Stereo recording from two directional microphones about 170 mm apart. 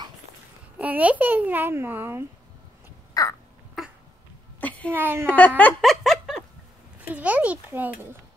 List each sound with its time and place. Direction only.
0.7 s a child's voice: 10° right (ahead or behind)
3.2 s throat clearing: 20° left (ahead or behind)
3.8 s a sound: centre (ahead or behind)
4.9 s a child's voice: 10° right (ahead or behind)
5.2 s a sound: 10° left (ahead or behind)
5.6 s snicker: 5° left (ahead or behind)
7.0 s a child's voice: 10° right (ahead or behind)